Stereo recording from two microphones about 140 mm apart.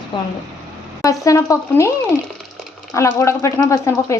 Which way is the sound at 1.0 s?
25° left (ahead or behind).